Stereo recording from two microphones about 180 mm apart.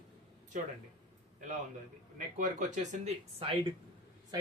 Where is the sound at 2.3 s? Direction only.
45° right (ahead or behind).